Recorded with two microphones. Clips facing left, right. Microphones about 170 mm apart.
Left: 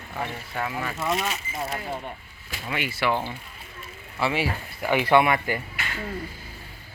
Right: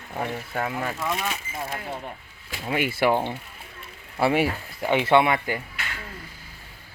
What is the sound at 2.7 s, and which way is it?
Speech, 45° right (ahead or behind).